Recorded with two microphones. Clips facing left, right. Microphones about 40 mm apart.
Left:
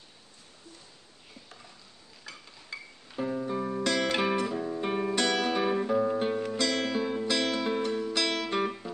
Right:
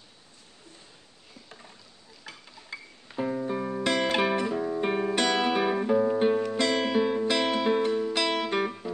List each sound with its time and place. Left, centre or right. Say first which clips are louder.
2.7 s music: right 2 dB; centre
3.8 s music: right 3 dB; right; by 6.1 s centre
6.1 s music: right 5 dB; centre
8.6 s music: right 1 dB; centre